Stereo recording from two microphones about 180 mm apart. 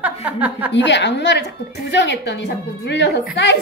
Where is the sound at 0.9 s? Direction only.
75° left (ahead or behind).